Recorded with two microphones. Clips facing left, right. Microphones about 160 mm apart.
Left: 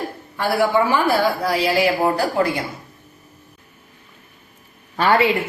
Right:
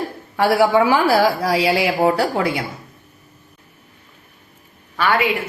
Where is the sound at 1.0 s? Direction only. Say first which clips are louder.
Right 3 dB; 90° right.